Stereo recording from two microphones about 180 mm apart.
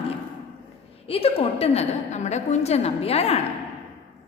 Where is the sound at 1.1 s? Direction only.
30° left (ahead or behind).